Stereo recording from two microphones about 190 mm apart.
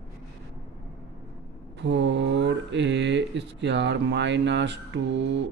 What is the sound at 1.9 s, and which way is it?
Speech, 70° right (ahead or behind).